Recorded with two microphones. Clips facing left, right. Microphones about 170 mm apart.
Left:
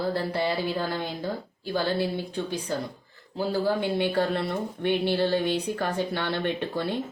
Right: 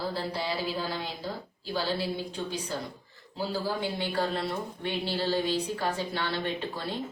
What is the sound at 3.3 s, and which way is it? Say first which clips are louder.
A woman's voice: left 6 dB; 60° left (ahead or behind).